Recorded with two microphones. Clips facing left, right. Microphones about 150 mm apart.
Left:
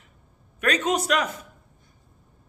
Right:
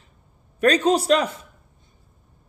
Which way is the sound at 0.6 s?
35° right (ahead or behind).